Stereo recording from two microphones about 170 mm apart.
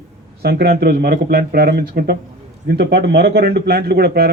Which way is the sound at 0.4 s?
70° right (ahead or behind).